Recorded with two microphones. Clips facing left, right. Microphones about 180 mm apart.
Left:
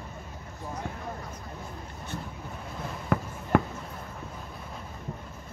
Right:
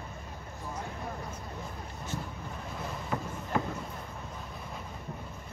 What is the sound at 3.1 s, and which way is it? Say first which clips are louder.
Fireworks: left 7 dB; 60° left (ahead or behind).